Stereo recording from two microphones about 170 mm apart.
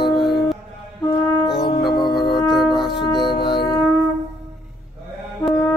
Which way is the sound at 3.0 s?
25° left (ahead or behind).